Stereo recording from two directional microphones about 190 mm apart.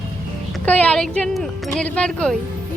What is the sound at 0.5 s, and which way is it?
A woman's voice, 5° left (ahead or behind).